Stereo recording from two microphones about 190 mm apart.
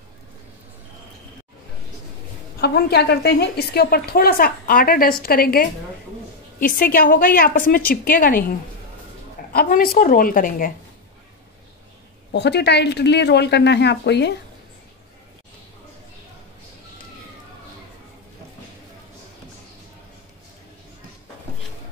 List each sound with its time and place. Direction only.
2.6 s a woman's voice: 60° left (ahead or behind)
12.3 s speech: 60° left (ahead or behind)